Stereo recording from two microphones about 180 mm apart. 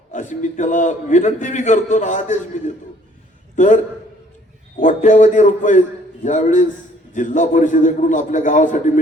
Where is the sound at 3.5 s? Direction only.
40° left (ahead or behind).